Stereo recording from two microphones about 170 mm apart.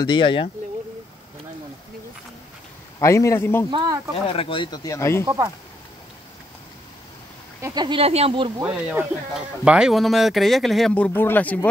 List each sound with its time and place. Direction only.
0.0 s speech: 25° left (ahead or behind)
3.0 s a man's voice: 15° left (ahead or behind)
3.7 s speech: 25° right (ahead or behind)
4.3 s speech: 30° left (ahead or behind)
5.2 s speech: 20° right (ahead or behind)
7.6 s speech: 25° right (ahead or behind)
8.5 s speech: 10° right (ahead or behind); by 11.6 s 10° left (ahead or behind)